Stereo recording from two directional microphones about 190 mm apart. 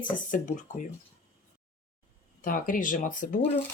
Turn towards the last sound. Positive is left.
turn(degrees=45)  # may be behind; listen again after turning